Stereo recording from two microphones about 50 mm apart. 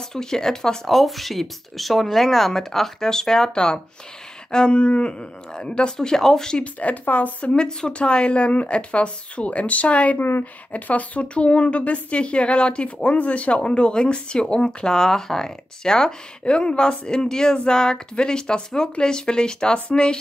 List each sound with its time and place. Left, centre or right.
0.1 s speech: centre
4.5 s a sound: centre
4.7 s speech: left
6.6 s a woman's voice: left
7.5 s a woman's voice: centre
10.1 s a woman's voice: left
10.4 s a woman's voice: left